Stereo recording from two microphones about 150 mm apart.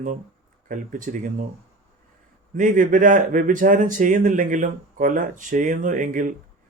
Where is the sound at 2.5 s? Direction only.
60° right (ahead or behind).